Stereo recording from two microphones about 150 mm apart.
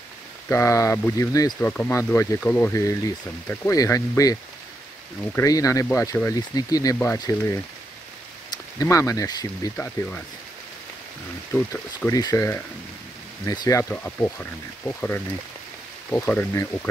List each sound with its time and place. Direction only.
0.5 s speech: 20° left (ahead or behind)
9.8 s speech: 10° left (ahead or behind)
12.1 s speech: 25° left (ahead or behind)